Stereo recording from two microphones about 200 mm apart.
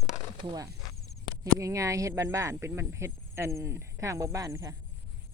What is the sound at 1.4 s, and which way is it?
Speech, 15° right (ahead or behind).